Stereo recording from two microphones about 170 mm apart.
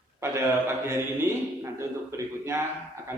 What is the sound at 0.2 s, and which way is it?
Speech, 15° right (ahead or behind).